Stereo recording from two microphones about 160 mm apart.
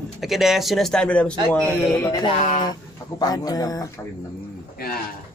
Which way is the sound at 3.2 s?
25° left (ahead or behind).